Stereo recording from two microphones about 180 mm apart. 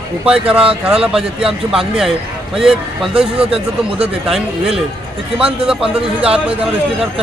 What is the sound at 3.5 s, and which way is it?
Speech, 30° right (ahead or behind).